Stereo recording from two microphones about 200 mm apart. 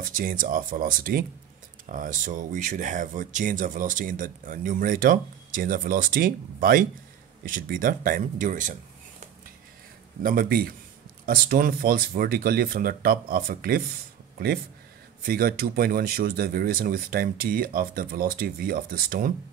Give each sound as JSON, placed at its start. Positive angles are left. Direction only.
{"t": 0.0, "sound": "speech", "side_deg": -45}
{"t": 10.2, "sound": "speech", "side_deg": -50}
{"t": 15.2, "sound": "speech", "side_deg": -45}